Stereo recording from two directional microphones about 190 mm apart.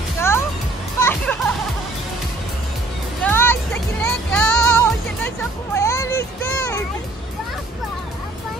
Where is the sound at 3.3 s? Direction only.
10° left (ahead or behind).